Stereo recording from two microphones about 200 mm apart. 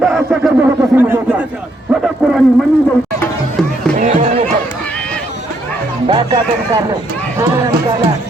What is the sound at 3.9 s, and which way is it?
Speech, 40° right (ahead or behind).